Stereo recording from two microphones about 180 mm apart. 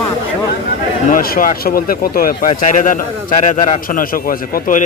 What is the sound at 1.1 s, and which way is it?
Speech, 50° left (ahead or behind).